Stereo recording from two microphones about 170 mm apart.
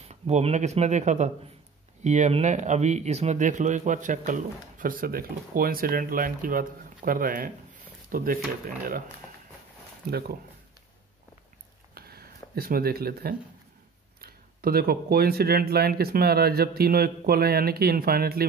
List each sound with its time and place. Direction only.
0.0 s speech: 40° right (ahead or behind); by 9.0 s 65° right (ahead or behind)
10.0 s speech: 65° right (ahead or behind)
11.9 s a sound: 65° right (ahead or behind)
14.2 s speech: 65° right (ahead or behind)